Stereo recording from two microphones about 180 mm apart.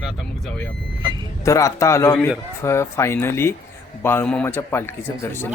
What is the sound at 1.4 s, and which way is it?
Speech, 15° left (ahead or behind).